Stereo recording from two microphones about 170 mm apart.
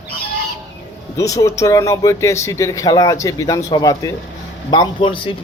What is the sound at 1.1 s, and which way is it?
Speech, 20° left (ahead or behind).